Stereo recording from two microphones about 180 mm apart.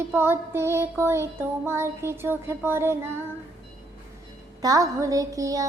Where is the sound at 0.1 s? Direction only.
10° right (ahead or behind).